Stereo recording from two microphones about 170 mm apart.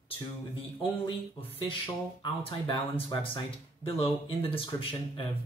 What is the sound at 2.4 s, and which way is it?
Speech, 35° left (ahead or behind).